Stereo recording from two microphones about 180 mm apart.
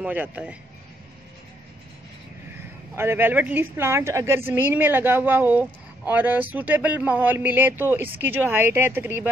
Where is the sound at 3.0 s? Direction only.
10° right (ahead or behind).